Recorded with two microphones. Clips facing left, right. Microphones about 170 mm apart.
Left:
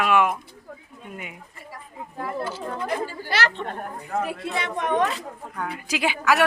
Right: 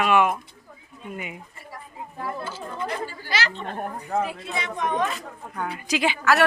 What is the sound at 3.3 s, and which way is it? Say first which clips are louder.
A woman's voice: left 2 dB; 65° left (ahead or behind).